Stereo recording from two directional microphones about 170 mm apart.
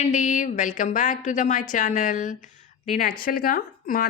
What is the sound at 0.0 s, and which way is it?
A woman's voice, 45° left (ahead or behind).